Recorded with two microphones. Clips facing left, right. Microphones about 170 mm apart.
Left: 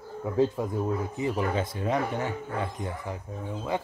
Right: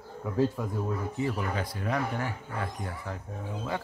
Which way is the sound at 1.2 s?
20° left (ahead or behind).